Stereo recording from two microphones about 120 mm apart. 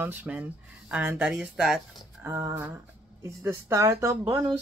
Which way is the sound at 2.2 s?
25° right (ahead or behind).